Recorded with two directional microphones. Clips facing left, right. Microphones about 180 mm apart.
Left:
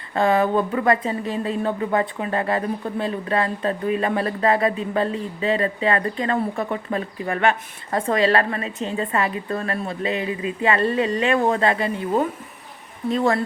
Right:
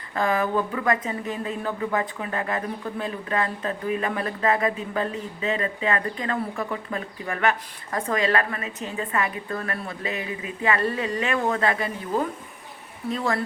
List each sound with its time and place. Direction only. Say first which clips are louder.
0.1 s speech: left 5 dB; 30° left (ahead or behind)